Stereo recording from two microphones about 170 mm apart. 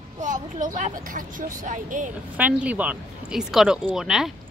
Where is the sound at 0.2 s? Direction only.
45° right (ahead or behind).